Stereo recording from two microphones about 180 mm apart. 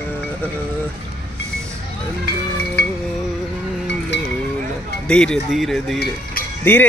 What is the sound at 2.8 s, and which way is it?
Music, 70° left (ahead or behind).